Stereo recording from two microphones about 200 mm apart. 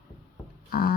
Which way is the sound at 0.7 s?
50° left (ahead or behind).